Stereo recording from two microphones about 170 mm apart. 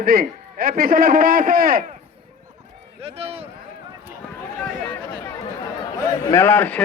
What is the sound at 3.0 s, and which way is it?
Speech, 35° right (ahead or behind).